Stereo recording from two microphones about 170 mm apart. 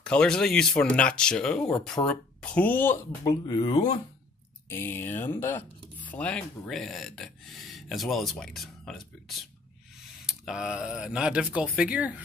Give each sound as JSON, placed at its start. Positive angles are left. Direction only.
{"t": 0.0, "sound": "speech", "side_deg": 5}
{"t": 3.3, "sound": "speech", "side_deg": 25}
{"t": 4.6, "sound": "speech", "side_deg": 15}